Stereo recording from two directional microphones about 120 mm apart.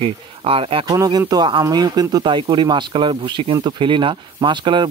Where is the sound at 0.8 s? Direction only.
30° right (ahead or behind).